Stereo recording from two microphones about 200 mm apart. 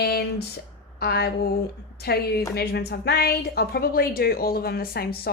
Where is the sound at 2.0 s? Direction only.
50° left (ahead or behind).